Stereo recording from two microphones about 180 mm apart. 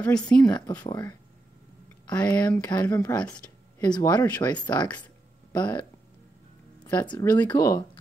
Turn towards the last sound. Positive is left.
turn(degrees=20)  # may be behind; listen again after turning